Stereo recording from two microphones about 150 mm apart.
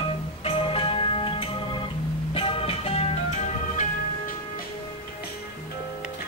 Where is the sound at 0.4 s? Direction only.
40° left (ahead or behind).